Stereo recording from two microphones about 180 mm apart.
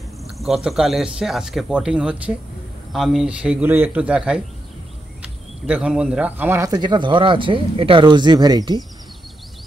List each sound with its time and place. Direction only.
0.2 s a man's voice: centre (ahead or behind); by 8.7 s 20° right (ahead or behind)